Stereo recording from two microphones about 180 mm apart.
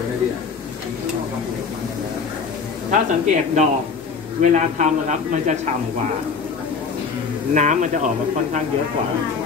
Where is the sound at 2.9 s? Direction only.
40° right (ahead or behind).